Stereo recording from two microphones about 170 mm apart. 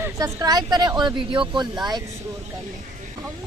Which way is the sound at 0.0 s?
20° right (ahead or behind).